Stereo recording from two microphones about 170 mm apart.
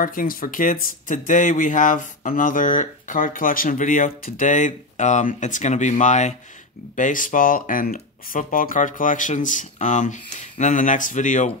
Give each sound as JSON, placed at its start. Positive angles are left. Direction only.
{"t": 0.0, "sound": "speech", "side_deg": 55}